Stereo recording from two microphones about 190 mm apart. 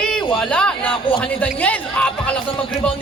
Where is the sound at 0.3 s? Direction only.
5° left (ahead or behind).